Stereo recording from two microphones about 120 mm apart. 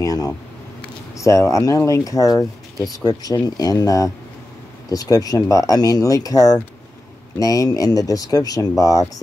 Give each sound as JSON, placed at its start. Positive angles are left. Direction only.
{"t": 0.0, "sound": "speech", "side_deg": 30}